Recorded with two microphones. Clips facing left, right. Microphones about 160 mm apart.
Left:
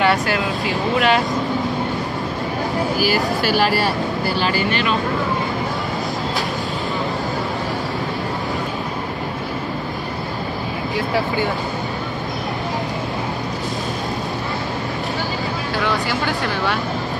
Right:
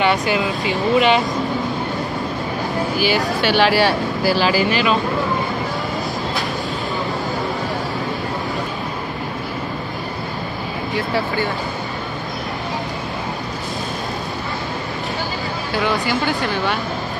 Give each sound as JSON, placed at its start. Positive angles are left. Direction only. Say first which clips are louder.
{"t": 0.0, "sound": "speech", "louder": "even", "side_deg": 0}
{"t": 3.0, "sound": "speech", "louder": "right 2 dB", "side_deg": 0}
{"t": 3.6, "sound": "speech", "louder": "right 3 dB", "side_deg": -80}
{"t": 15.7, "sound": "speech", "louder": "right 3 dB", "side_deg": 0}